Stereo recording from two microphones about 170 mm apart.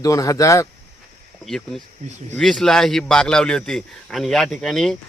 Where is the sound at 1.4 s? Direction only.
Centre (ahead or behind).